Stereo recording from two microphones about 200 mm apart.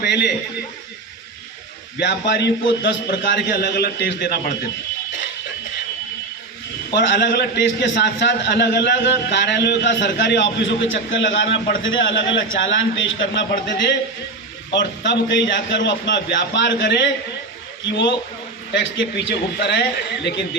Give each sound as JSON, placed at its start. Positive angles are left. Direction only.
{"t": 0.0, "sound": "a man's voice", "side_deg": 55}
{"t": 2.0, "sound": "a man's voice", "side_deg": 60}
{"t": 6.9, "sound": "a man's voice", "side_deg": 60}
{"t": 18.7, "sound": "a man's voice", "side_deg": 65}